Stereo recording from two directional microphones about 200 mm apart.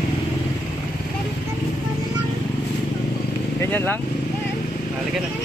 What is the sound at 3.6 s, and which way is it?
Speech, 10° left (ahead or behind).